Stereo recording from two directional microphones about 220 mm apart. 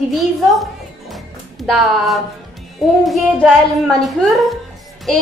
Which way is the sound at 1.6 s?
Centre (ahead or behind).